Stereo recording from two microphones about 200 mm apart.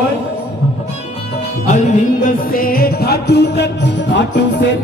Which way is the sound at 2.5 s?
45° left (ahead or behind).